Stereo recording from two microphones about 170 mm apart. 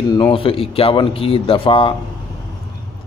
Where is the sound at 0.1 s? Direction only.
30° left (ahead or behind).